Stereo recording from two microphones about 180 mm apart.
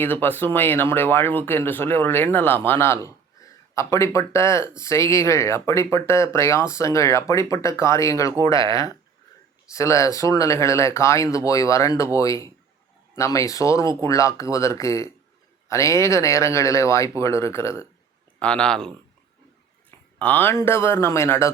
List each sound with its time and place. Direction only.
0.0 s speech: 10° left (ahead or behind)
20.1 s speech: 10° left (ahead or behind)